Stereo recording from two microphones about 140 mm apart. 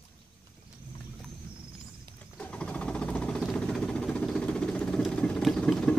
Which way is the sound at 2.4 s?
10° left (ahead or behind).